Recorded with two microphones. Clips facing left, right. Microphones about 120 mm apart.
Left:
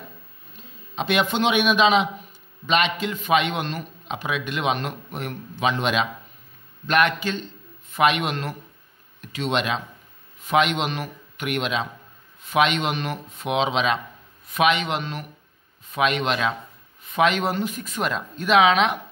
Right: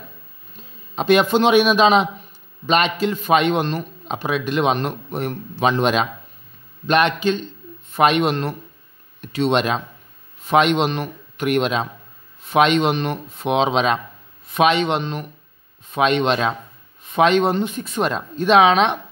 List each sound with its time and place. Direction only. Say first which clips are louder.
0.9 s a man's voice: right 7 dB; 40° right (ahead or behind)
6.9 s speech: right 4 dB; 25° right (ahead or behind)
7.9 s a man's voice: right 4 dB; 35° right (ahead or behind)